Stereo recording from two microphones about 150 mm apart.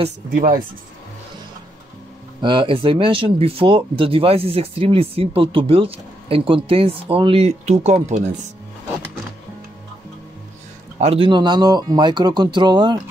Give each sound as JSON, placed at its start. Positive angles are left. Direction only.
{"t": 0.3, "sound": "speech", "side_deg": -65}
{"t": 2.4, "sound": "speech", "side_deg": -35}
{"t": 11.0, "sound": "speech", "side_deg": -40}